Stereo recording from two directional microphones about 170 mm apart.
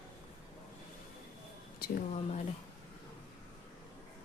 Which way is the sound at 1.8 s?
65° left (ahead or behind).